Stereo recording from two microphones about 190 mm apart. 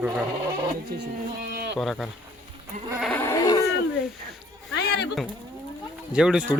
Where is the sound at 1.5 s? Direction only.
60° right (ahead or behind).